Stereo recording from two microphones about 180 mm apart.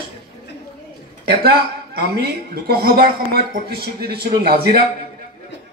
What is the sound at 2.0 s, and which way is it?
Speech, 60° right (ahead or behind).